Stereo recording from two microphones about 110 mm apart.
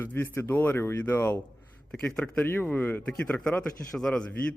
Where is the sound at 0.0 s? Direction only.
20° left (ahead or behind).